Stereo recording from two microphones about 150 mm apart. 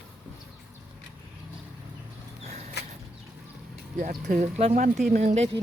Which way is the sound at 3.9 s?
70° right (ahead or behind).